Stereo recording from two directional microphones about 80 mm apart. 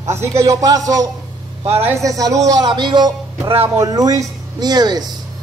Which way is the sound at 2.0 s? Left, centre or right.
Right.